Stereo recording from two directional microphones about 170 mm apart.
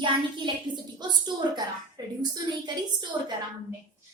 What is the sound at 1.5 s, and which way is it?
A woman's voice, 25° right (ahead or behind).